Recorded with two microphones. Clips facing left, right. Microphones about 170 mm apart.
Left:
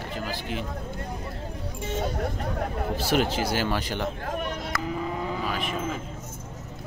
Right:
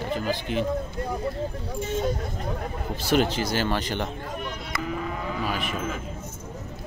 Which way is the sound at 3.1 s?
5° left (ahead or behind).